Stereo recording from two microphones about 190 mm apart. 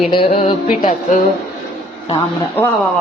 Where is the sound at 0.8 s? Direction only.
45° left (ahead or behind).